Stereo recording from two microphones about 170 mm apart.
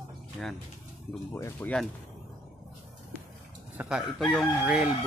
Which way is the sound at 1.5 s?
5° left (ahead or behind).